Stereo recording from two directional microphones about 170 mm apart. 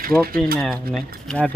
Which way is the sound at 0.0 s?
60° right (ahead or behind).